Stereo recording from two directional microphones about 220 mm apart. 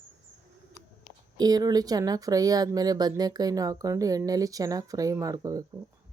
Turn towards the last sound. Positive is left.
turn(degrees=-15)  # may be behind; listen again after turning